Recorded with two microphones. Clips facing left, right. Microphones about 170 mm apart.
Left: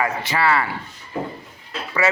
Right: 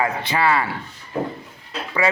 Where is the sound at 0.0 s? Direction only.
20° right (ahead or behind).